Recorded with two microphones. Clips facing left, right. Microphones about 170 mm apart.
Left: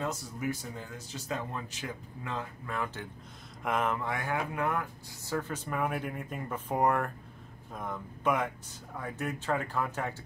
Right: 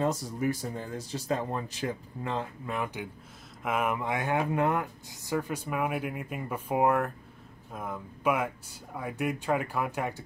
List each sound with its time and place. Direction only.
0.0 s speech: 35° right (ahead or behind); by 10.2 s 15° right (ahead or behind)